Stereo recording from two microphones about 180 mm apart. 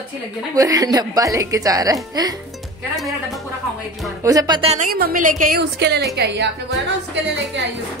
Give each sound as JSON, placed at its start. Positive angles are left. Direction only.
{"t": 0.6, "sound": "speech", "side_deg": -20}
{"t": 4.2, "sound": "speech", "side_deg": -20}
{"t": 4.8, "sound": "a woman's voice", "side_deg": -55}